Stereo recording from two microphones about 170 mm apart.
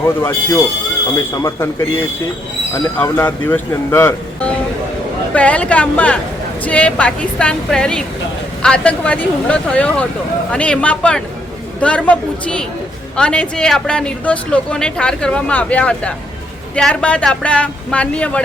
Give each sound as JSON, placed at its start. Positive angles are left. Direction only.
{"t": 0.0, "sound": "speech", "side_deg": 15}